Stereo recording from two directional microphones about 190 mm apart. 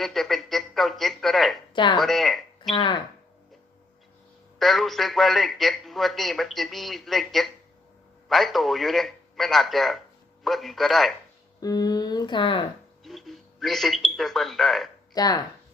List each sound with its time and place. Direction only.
0.0 s a sound: centre (ahead or behind)
1.7 s speech: 25° left (ahead or behind)
2.0 s a sound: centre (ahead or behind)
2.7 s speech: 25° left (ahead or behind)
4.6 s a man's voice: centre (ahead or behind)
11.6 s speech: 20° left (ahead or behind)
13.1 s speech: centre (ahead or behind)
15.1 s speech: 20° left (ahead or behind)